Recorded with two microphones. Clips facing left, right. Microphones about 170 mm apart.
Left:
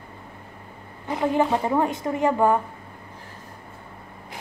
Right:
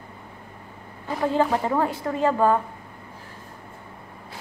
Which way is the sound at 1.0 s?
20° left (ahead or behind).